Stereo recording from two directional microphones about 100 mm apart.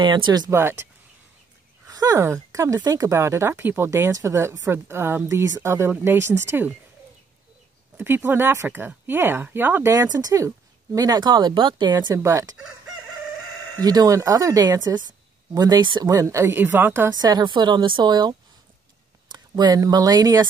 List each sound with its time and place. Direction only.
0.0 s speech: 50° right (ahead or behind)
0.5 s speech: 25° right (ahead or behind)
1.9 s speech: 40° right (ahead or behind)
8.0 s speech: 20° right (ahead or behind)
9.9 s speech: 35° right (ahead or behind)
12.1 s speech: 30° right (ahead or behind)
13.7 s speech: 40° right (ahead or behind)
16.1 s speech: 30° right (ahead or behind)
17.1 s speech: 40° right (ahead or behind)